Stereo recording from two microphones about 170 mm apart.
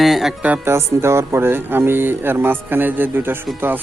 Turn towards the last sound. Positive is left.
turn(degrees=-10)  # may be behind; listen again after turning